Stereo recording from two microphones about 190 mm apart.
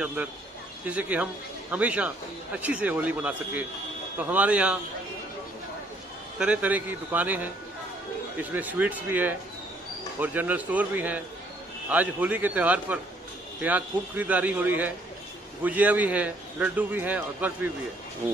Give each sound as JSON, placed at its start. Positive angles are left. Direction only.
{"t": 0.0, "sound": "speech", "side_deg": -10}
{"t": 6.3, "sound": "speech", "side_deg": -5}